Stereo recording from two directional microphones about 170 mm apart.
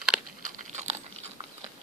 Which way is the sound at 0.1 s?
5° right (ahead or behind).